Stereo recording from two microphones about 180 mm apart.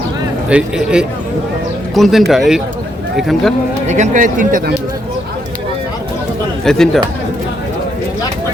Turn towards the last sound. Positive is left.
turn(degrees=0)  # may be behind; listen again after turning